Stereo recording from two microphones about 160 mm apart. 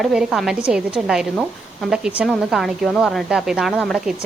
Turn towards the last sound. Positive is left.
turn(degrees=0)  # may be behind; listen again after turning